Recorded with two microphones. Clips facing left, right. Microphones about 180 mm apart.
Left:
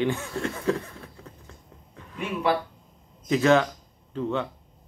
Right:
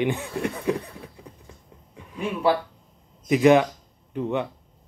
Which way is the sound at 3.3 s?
15° right (ahead or behind).